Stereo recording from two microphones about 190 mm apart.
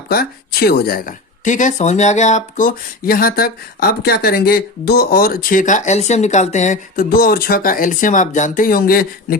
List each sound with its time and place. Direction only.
0.1 s a woman's voice: 55° left (ahead or behind)